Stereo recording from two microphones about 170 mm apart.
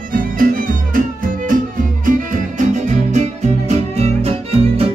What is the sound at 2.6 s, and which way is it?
Music, 45° right (ahead or behind).